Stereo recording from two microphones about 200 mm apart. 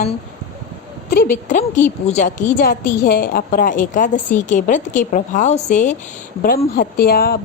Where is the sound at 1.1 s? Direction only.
45° left (ahead or behind).